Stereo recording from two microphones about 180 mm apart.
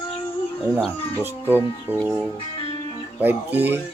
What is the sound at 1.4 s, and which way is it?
Speech, 10° right (ahead or behind).